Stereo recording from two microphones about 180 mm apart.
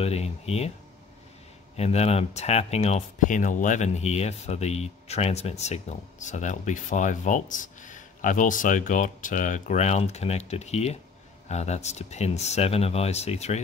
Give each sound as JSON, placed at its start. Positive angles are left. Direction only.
{"t": 0.0, "sound": "speech", "side_deg": 35}
{"t": 1.8, "sound": "speech", "side_deg": 35}